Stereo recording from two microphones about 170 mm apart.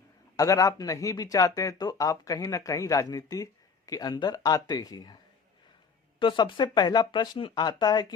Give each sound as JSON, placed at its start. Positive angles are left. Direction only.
{"t": 0.3, "sound": "speech", "side_deg": 20}
{"t": 6.1, "sound": "speech", "side_deg": 25}